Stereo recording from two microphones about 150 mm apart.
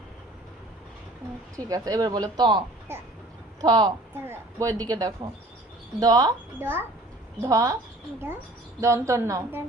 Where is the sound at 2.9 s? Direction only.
15° right (ahead or behind).